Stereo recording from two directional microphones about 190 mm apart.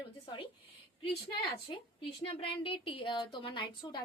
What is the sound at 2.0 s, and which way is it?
A woman's voice, 30° left (ahead or behind).